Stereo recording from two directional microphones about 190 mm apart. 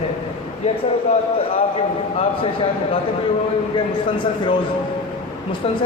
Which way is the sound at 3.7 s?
25° left (ahead or behind).